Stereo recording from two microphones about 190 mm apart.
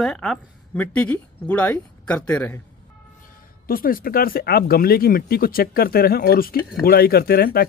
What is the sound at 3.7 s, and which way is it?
Speech, 50° left (ahead or behind).